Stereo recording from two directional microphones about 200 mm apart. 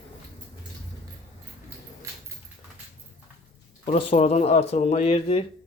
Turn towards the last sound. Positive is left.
turn(degrees=30)  # may be behind; listen again after turning